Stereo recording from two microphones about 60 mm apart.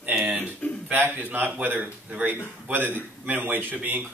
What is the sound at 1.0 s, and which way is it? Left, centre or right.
A man's voice, right.